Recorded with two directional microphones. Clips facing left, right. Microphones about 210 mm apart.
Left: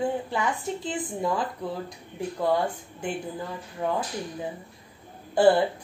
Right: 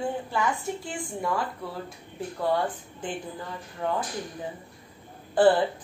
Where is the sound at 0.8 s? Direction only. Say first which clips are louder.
Left 3 dB; 20° left (ahead or behind).